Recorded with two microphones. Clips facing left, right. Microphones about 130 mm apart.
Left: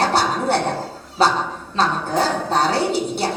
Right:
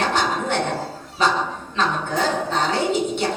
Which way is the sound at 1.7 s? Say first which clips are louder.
Left 3 dB; 35° left (ahead or behind).